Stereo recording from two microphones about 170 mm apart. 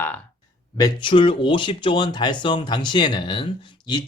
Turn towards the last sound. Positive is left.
turn(degrees=25)  # may be behind; listen again after turning